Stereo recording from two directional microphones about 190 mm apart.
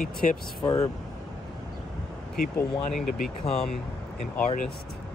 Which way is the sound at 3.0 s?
40° left (ahead or behind).